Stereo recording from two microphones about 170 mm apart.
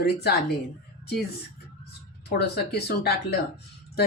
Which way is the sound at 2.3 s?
70° left (ahead or behind).